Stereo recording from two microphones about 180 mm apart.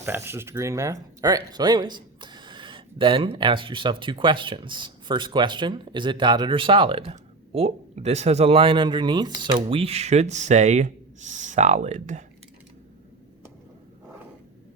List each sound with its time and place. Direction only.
0.0 s speech: 10° right (ahead or behind); by 12.2 s 40° right (ahead or behind)